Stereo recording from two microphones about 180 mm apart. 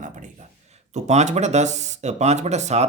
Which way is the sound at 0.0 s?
45° right (ahead or behind).